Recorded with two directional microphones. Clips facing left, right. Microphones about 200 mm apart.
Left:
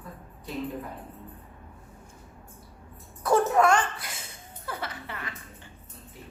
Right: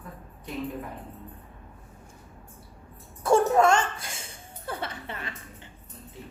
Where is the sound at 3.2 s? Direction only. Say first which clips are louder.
Right 2 dB; 25° right (ahead or behind).